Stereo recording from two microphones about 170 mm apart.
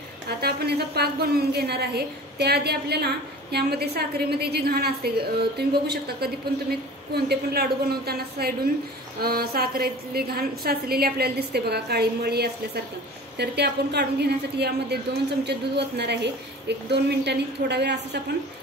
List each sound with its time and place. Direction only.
0.4 s a woman's voice: 70° right (ahead or behind)